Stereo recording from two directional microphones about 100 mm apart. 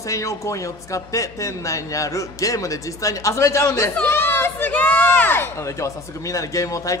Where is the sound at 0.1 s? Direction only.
30° left (ahead or behind).